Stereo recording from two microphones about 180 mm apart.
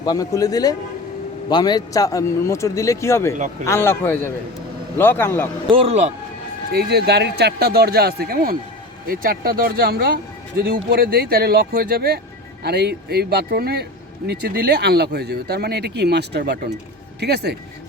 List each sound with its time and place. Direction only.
0.0 s a man's voice: 20° left (ahead or behind)
5.7 s speech: 35° right (ahead or behind)
6.7 s speech: 60° right (ahead or behind)